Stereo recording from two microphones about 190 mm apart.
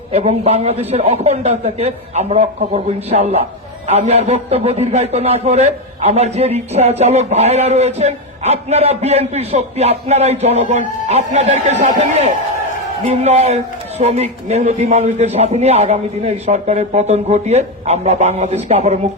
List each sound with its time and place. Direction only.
0.1 s a man's voice: 35° right (ahead or behind)